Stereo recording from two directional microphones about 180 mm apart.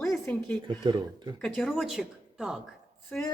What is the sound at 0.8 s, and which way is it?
Speech, 25° right (ahead or behind).